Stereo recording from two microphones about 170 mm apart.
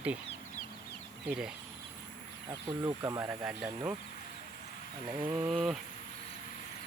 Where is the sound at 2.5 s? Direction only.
20° right (ahead or behind).